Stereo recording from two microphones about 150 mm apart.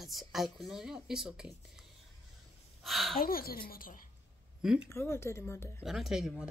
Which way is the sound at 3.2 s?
80° left.